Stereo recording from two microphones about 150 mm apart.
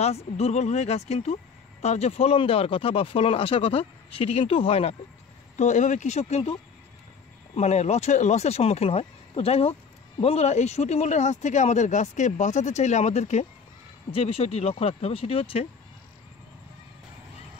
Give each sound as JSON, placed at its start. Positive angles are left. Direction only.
{"t": 0.0, "sound": "speech", "side_deg": 45}
{"t": 5.6, "sound": "speech", "side_deg": 55}
{"t": 7.5, "sound": "speech", "side_deg": 50}